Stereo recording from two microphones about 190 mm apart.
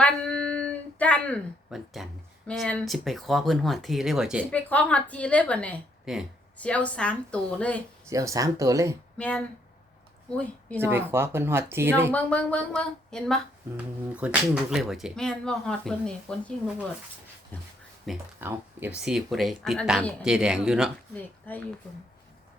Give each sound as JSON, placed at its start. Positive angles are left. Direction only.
{"t": 0.0, "sound": "a sound", "side_deg": 5}
{"t": 2.5, "sound": "speech", "side_deg": 5}
{"t": 4.5, "sound": "a woman's voice", "side_deg": 10}
{"t": 8.0, "sound": "speech", "side_deg": -15}
{"t": 9.1, "sound": "a woman's voice", "side_deg": 5}
{"t": 10.8, "sound": "speech", "side_deg": -10}
{"t": 12.1, "sound": "speech", "side_deg": 5}
{"t": 17.5, "sound": "a woman's voice", "side_deg": 10}
{"t": 18.3, "sound": "speech", "side_deg": -10}
{"t": 21.5, "sound": "a woman's voice", "side_deg": 10}